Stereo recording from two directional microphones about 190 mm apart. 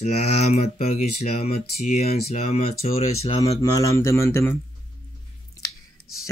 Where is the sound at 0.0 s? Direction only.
35° left (ahead or behind).